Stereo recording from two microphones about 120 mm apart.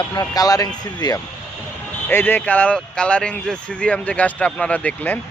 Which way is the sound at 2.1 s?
15° left (ahead or behind).